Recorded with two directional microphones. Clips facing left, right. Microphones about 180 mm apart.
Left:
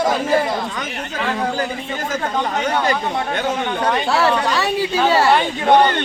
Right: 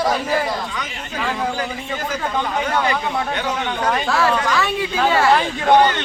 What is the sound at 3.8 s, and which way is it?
Speech, 30° left (ahead or behind).